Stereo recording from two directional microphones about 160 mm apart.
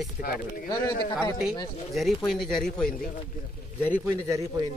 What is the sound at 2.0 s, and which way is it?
Speech, centre (ahead or behind).